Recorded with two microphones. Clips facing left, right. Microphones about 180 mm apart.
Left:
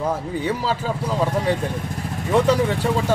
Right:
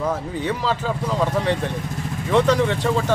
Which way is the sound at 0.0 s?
10° left (ahead or behind).